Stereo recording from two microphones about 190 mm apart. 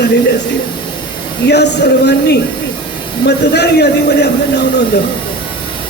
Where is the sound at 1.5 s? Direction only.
60° left (ahead or behind).